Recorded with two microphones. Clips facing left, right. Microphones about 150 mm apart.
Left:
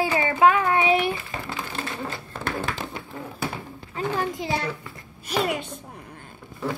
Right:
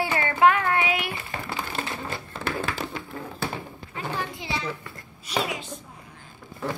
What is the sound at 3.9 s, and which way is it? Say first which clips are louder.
Speech: left 5 dB; 40° left (ahead or behind).